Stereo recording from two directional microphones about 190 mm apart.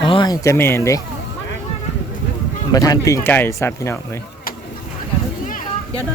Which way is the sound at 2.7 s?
20° left (ahead or behind).